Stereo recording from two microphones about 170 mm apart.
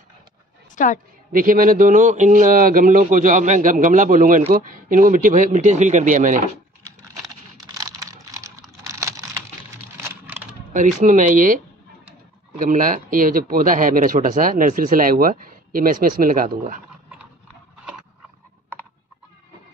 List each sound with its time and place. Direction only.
0.8 s a woman's voice: 50° left (ahead or behind)
1.3 s speech: 55° right (ahead or behind)
7.7 s typing: 20° right (ahead or behind)
9.9 s a sound: 15° right (ahead or behind)
10.7 s speech: 50° right (ahead or behind)